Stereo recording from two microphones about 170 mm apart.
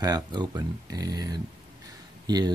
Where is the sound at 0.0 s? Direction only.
25° right (ahead or behind).